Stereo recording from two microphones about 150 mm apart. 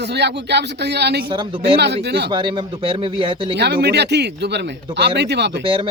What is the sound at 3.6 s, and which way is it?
Speech, 90° right.